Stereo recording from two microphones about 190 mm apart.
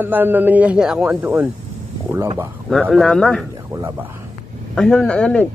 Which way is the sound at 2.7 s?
Centre (ahead or behind).